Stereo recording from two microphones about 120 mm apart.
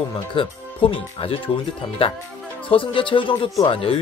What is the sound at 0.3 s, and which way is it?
Speech, 45° left (ahead or behind).